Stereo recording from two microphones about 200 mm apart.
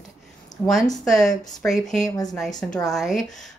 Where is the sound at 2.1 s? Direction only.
20° left (ahead or behind).